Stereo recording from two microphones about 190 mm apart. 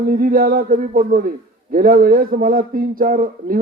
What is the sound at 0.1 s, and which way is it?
A man's voice, 50° right (ahead or behind).